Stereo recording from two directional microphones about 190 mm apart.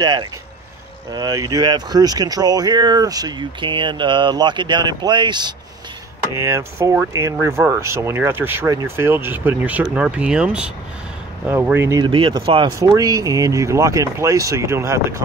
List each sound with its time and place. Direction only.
0.0 s speech: 20° right (ahead or behind)